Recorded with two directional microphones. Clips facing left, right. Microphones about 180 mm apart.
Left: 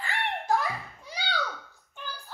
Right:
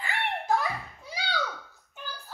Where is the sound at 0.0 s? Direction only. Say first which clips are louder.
Even; centre (ahead or behind).